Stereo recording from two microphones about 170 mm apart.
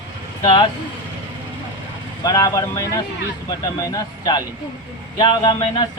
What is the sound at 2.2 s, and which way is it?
A man's voice, 20° left (ahead or behind).